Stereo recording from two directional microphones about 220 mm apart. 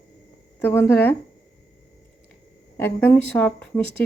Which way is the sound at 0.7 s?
10° left (ahead or behind).